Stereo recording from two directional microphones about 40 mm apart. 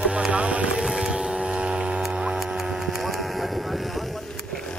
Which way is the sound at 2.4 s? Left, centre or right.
Centre.